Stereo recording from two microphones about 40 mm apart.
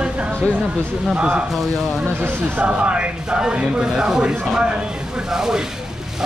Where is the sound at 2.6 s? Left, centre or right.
Right.